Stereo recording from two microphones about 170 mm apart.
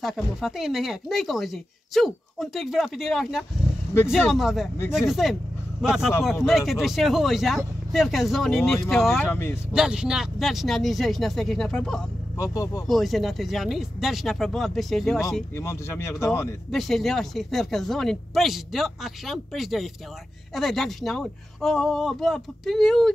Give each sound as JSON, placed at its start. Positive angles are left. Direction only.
{"t": 0.0, "sound": "speech", "side_deg": 0}
{"t": 9.2, "sound": "speech", "side_deg": 15}
{"t": 9.7, "sound": "speech", "side_deg": -5}
{"t": 12.4, "sound": "speech", "side_deg": 20}
{"t": 12.8, "sound": "speech", "side_deg": 0}
{"t": 15.5, "sound": "speech", "side_deg": 15}
{"t": 16.7, "sound": "speech", "side_deg": 0}